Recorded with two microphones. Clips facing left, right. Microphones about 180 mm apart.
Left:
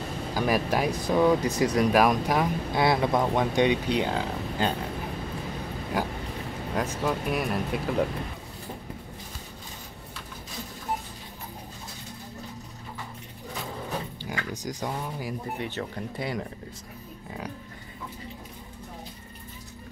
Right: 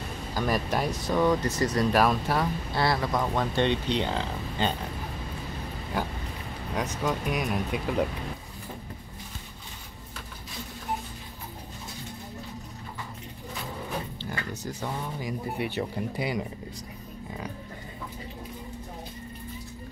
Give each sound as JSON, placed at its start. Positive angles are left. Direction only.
{"t": 0.3, "sound": "speech", "side_deg": 10}
{"t": 6.7, "sound": "speech", "side_deg": 5}
{"t": 14.5, "sound": "speech", "side_deg": 15}
{"t": 15.6, "sound": "speech", "side_deg": -10}